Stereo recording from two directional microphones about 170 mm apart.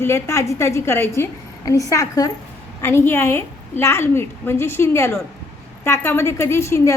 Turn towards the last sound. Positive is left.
turn(degrees=15)  # may be behind; listen again after turning